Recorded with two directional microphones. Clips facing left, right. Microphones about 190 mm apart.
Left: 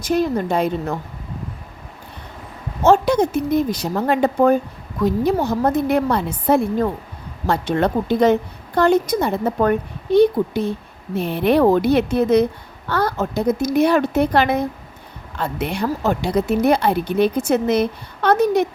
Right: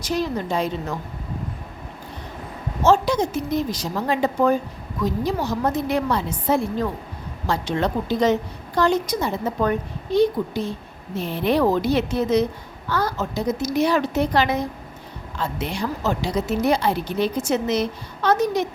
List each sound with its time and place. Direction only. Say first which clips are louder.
0.0 s a woman's voice: left 5 dB; 55° left (ahead or behind)
2.8 s a woman's voice: left 4 dB; 60° left (ahead or behind)